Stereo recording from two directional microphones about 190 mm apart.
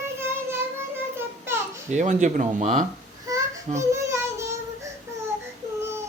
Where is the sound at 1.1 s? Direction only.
15° right (ahead or behind).